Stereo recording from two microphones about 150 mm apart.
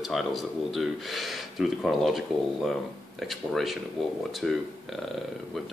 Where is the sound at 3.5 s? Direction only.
Centre (ahead or behind).